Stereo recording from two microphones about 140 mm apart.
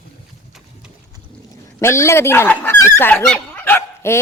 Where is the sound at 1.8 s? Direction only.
20° left (ahead or behind).